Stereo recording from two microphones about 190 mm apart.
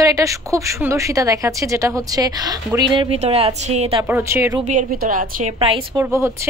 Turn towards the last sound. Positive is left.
turn(degrees=-15)  # may be behind; listen again after turning